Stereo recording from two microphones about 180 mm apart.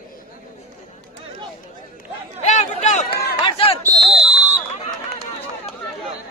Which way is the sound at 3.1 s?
60° left (ahead or behind).